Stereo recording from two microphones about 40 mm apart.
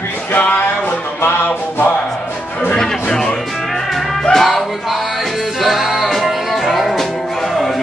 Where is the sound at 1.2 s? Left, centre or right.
Left.